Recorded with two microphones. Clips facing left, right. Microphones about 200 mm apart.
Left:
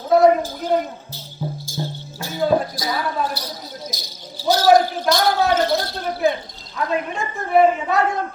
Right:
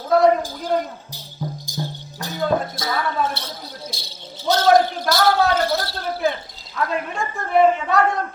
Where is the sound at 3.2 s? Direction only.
25° right (ahead or behind).